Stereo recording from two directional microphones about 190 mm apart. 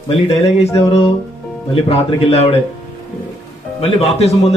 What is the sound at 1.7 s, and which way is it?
Speech, 30° left (ahead or behind).